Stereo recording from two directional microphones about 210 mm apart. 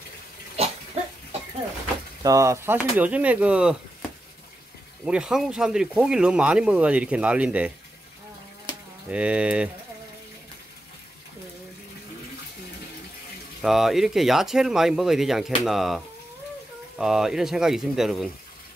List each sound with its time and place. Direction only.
1.0 s a sound: 30° right (ahead or behind)
2.2 s speech: 15° right (ahead or behind)
5.0 s speech: 5° right (ahead or behind)
9.1 s speech: 5° right (ahead or behind)
13.6 s speech: centre (ahead or behind)
17.0 s speech: centre (ahead or behind)